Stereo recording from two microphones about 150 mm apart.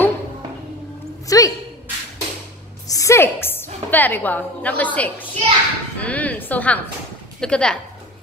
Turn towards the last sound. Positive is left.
turn(degrees=5)  # may be behind; listen again after turning